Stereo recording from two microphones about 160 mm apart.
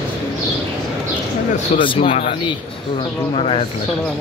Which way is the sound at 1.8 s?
35° left (ahead or behind).